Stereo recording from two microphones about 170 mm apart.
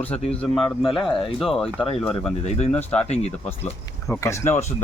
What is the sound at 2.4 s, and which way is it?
Speech, 40° left (ahead or behind).